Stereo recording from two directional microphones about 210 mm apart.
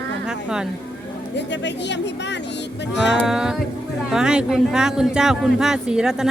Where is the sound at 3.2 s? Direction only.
5° right (ahead or behind).